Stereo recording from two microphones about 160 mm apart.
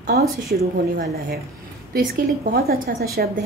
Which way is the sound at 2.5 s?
70° right (ahead or behind).